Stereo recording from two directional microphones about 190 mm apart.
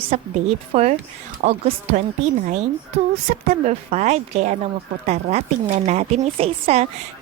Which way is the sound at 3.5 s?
35° right (ahead or behind).